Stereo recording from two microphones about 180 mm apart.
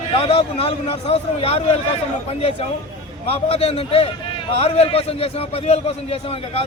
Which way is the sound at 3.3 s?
35° left (ahead or behind).